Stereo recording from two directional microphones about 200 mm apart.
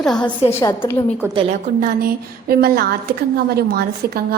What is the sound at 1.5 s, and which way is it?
A woman's voice, 45° right (ahead or behind).